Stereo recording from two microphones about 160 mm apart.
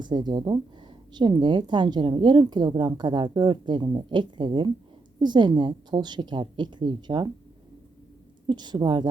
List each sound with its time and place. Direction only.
0.0 s speech: 25° right (ahead or behind)
8.4 s speech: 25° right (ahead or behind)